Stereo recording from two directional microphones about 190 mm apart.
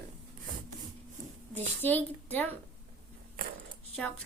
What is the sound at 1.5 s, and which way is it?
Speech, 10° left (ahead or behind).